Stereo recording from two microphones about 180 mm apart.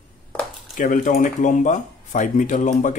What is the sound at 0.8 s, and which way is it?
Speech, 50° left (ahead or behind).